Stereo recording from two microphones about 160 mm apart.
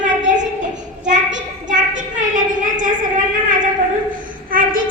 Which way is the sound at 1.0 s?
50° right (ahead or behind).